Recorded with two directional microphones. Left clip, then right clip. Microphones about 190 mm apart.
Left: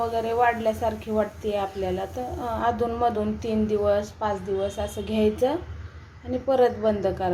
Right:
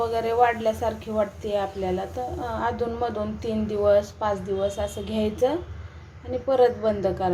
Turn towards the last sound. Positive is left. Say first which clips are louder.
# even
turn(degrees=0)  # may be behind; listen again after turning